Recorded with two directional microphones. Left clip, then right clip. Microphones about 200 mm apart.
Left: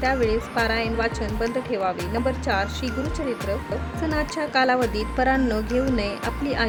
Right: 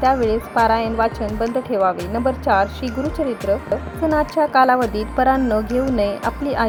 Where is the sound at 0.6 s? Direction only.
10° right (ahead or behind).